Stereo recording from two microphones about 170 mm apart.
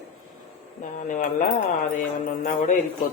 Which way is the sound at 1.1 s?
50° left (ahead or behind).